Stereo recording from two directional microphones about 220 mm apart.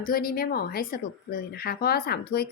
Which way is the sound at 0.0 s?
40° left (ahead or behind).